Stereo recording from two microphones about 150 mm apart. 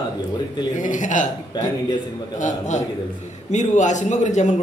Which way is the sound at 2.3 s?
55° left (ahead or behind).